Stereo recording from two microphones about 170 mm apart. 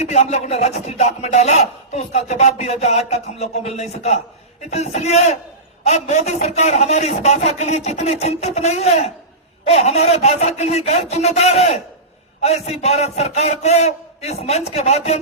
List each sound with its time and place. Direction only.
0.0 s speech: 40° left (ahead or behind)